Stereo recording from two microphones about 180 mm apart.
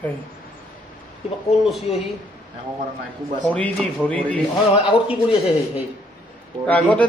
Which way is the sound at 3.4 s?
5° left (ahead or behind).